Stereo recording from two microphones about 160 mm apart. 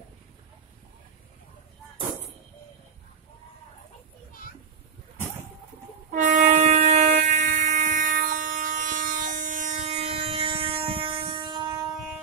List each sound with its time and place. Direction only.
6.1 s train: 50° right (ahead or behind); by 11.8 s 25° right (ahead or behind)